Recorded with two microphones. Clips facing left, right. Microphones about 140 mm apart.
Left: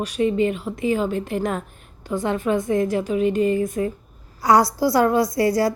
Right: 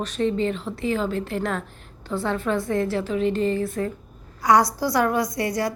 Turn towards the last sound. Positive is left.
turn(degrees=30)  # may be behind; listen again after turning